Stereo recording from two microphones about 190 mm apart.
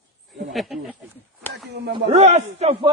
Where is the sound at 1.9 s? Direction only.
35° right (ahead or behind).